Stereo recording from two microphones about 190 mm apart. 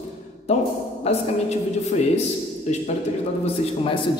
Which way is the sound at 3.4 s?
30° left (ahead or behind).